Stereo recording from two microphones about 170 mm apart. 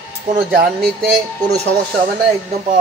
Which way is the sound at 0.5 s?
60° right (ahead or behind).